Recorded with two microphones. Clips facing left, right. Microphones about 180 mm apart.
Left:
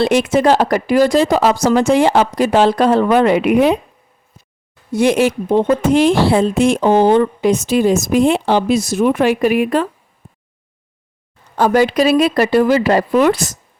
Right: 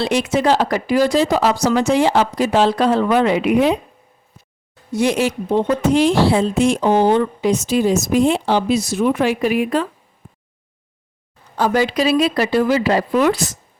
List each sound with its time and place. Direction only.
0.0 s speech: 50° left (ahead or behind)
4.9 s speech: 60° left (ahead or behind)
11.5 s speech: 50° left (ahead or behind)